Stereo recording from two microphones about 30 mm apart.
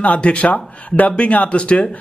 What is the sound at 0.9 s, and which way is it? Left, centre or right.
Speech, left.